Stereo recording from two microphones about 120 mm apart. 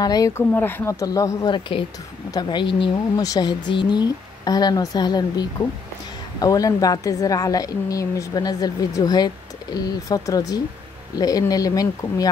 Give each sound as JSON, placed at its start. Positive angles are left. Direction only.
{"t": 0.0, "sound": "a woman's voice", "side_deg": 30}
{"t": 0.3, "sound": "speech", "side_deg": 15}
{"t": 0.9, "sound": "speech", "side_deg": 30}
{"t": 1.5, "sound": "a woman's voice", "side_deg": 45}